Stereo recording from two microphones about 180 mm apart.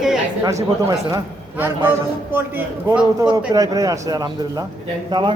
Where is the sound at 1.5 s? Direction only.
10° right (ahead or behind).